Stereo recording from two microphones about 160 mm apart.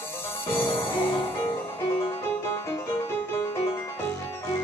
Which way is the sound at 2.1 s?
15° left (ahead or behind).